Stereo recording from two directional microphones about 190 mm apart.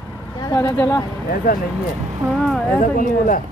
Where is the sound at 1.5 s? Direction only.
50° left (ahead or behind).